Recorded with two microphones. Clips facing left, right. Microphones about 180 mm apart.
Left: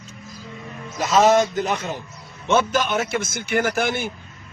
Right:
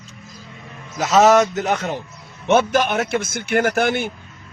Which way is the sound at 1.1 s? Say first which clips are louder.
Right 3 dB; 75° right (ahead or behind).